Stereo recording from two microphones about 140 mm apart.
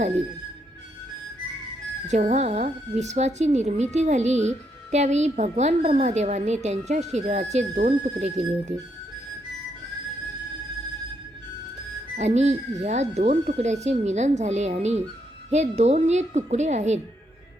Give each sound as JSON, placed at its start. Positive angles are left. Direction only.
{"t": 2.0, "sound": "a woman's voice", "side_deg": -55}
{"t": 12.1, "sound": "a woman's voice", "side_deg": -55}